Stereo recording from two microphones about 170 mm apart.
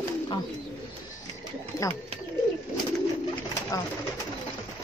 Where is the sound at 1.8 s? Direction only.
20° left (ahead or behind).